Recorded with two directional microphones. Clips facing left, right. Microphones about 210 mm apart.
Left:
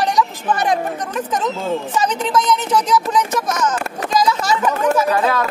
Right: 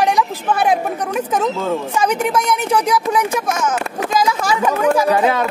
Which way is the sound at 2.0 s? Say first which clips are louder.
Right 2 dB; 10° right (ahead or behind).